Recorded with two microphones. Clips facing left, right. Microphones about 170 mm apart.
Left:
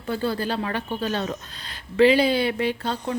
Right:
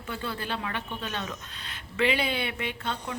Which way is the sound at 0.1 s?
35° left (ahead or behind).